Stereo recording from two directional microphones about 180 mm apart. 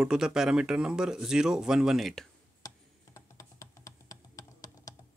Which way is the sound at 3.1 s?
15° left (ahead or behind).